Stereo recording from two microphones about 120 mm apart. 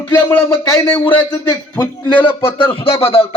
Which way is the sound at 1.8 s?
40° left (ahead or behind).